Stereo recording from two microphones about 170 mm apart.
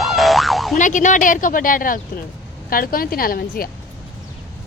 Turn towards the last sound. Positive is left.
turn(degrees=60)  # may be behind; listen again after turning